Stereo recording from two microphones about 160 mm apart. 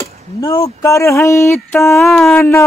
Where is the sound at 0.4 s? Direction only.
20° left (ahead or behind).